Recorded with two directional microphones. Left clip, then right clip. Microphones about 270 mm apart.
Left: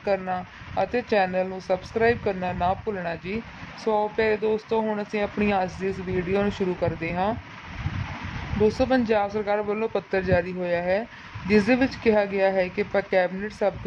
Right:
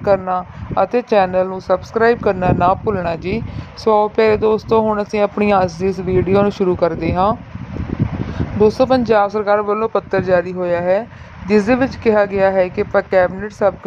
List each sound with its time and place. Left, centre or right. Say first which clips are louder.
0.0 s speech: right 10 dB; centre
8.6 s speech: right 9 dB; right